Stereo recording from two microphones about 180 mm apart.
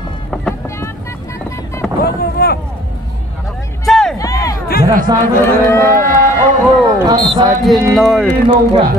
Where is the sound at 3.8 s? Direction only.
Centre (ahead or behind).